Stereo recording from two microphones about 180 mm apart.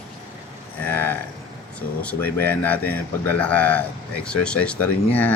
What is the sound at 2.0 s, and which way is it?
Speech, 10° left (ahead or behind).